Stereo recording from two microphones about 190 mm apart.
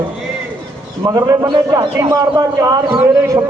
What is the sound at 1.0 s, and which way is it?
Speech, 20° right (ahead or behind).